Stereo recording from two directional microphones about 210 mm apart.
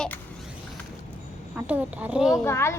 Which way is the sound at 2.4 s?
10° left (ahead or behind).